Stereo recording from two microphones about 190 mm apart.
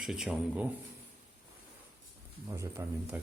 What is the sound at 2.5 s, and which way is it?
Speech, 15° right (ahead or behind).